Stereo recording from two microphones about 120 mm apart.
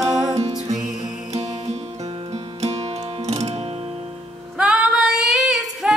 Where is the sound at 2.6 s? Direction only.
60° right (ahead or behind).